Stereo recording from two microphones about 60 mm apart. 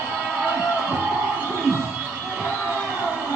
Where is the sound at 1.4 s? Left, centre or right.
Right.